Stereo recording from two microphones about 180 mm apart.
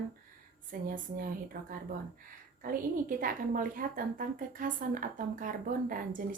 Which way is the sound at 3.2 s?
50° right (ahead or behind).